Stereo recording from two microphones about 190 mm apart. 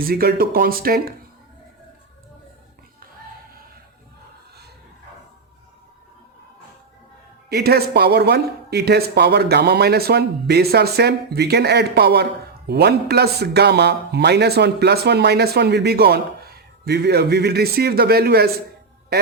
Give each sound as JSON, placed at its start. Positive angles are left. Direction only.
{"t": 0.0, "sound": "speech", "side_deg": -50}
{"t": 7.5, "sound": "speech", "side_deg": -55}